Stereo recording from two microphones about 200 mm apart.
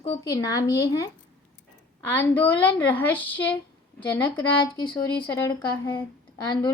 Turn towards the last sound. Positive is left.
turn(degrees=20)  # may be behind; listen again after turning